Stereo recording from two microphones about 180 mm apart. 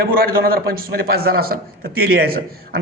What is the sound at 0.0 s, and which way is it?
A man's voice, 55° right (ahead or behind).